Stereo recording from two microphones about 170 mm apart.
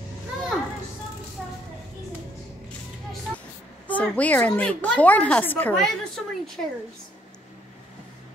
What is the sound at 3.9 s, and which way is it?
A woman's voice, 10° left (ahead or behind).